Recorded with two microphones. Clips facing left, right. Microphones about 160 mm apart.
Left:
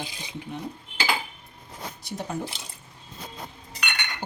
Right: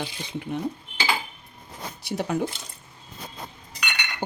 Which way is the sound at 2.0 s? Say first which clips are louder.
Right 6 dB; 75° right (ahead or behind).